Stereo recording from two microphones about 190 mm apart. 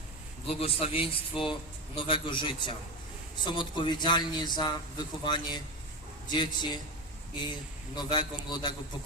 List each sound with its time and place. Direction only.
0.4 s a man's voice: 30° left (ahead or behind)
7.9 s a man's voice: 25° left (ahead or behind)